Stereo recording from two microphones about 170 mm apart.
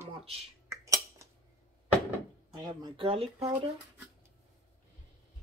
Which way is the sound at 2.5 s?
25° right (ahead or behind).